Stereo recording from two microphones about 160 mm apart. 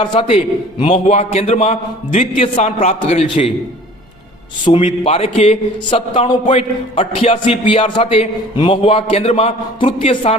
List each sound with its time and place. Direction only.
0.0 s a man's voice: 30° left (ahead or behind)
4.6 s a man's voice: 30° left (ahead or behind)